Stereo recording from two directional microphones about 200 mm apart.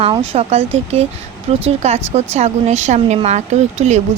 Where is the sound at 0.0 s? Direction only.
30° right (ahead or behind).